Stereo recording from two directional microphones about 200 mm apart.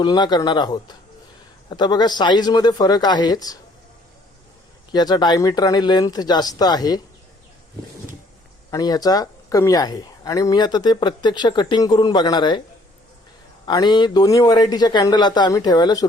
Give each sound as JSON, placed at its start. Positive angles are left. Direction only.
{"t": 0.0, "sound": "speech", "side_deg": 20}
{"t": 4.9, "sound": "speech", "side_deg": 20}
{"t": 8.7, "sound": "speech", "side_deg": 20}
{"t": 13.7, "sound": "speech", "side_deg": 20}